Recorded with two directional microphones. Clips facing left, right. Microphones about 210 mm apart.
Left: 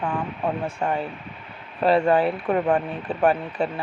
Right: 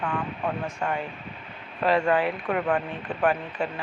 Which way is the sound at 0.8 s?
30° left (ahead or behind).